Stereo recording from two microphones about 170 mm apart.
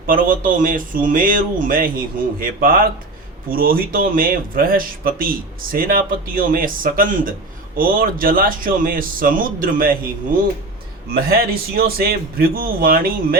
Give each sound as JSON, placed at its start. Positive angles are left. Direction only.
{"t": 0.0, "sound": "speech", "side_deg": -55}
{"t": 11.1, "sound": "speech", "side_deg": -60}